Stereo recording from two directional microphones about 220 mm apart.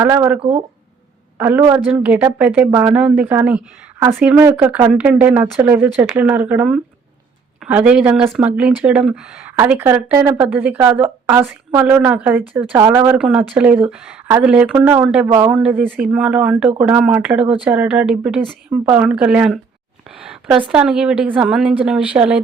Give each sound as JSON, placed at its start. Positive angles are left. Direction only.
{"t": 0.0, "sound": "a woman's voice", "side_deg": -10}
{"t": 0.3, "sound": "speech", "side_deg": -25}
{"t": 1.4, "sound": "a woman's voice", "side_deg": -10}